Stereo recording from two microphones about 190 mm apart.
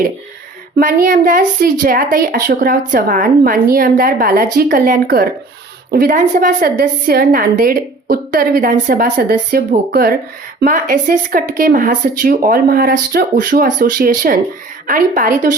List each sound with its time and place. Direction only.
0.8 s a woman's voice: 45° right (ahead or behind)